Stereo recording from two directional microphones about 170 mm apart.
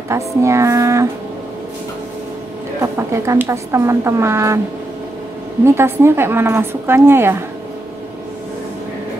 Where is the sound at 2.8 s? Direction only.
15° right (ahead or behind).